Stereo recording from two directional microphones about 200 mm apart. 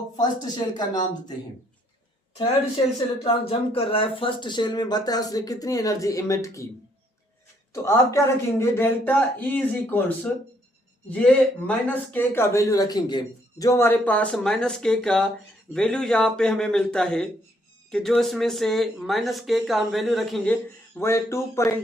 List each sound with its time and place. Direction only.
0.2 s speech: 20° left (ahead or behind)
3.5 s speech: 30° left (ahead or behind)
7.7 s a man's voice: 15° left (ahead or behind)
21.0 s a man's voice: 15° left (ahead or behind)